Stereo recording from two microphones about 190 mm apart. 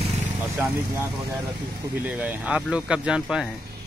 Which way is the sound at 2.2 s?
5° right (ahead or behind).